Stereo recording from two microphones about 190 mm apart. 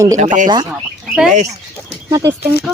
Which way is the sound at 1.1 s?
5° right (ahead or behind).